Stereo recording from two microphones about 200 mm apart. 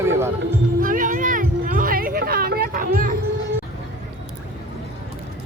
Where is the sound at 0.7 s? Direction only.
45° right (ahead or behind).